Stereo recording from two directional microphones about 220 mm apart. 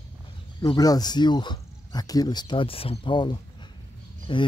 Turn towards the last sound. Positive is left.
turn(degrees=20)  # may be behind; listen again after turning